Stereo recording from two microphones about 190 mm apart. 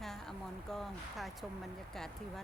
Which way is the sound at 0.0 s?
Centre (ahead or behind).